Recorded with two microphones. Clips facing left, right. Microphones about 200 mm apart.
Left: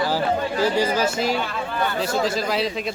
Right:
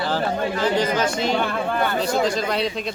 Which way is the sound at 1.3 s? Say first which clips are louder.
Right 4 dB; 55° right (ahead or behind).